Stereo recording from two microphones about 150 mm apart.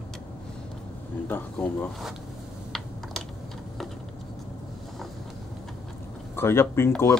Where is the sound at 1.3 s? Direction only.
10° left (ahead or behind).